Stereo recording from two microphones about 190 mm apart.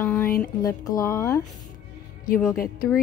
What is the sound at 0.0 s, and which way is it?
Music, 10° left (ahead or behind).